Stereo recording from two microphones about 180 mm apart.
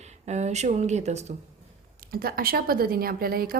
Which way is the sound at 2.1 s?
55° right (ahead or behind).